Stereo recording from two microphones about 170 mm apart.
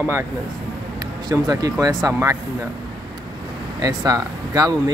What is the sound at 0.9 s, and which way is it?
Speech, 20° right (ahead or behind).